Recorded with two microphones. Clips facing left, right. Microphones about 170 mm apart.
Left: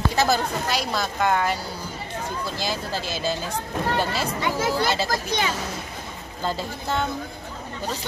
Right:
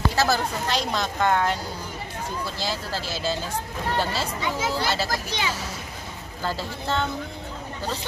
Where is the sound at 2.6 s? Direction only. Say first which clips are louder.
Left 2 dB; 15° left (ahead or behind).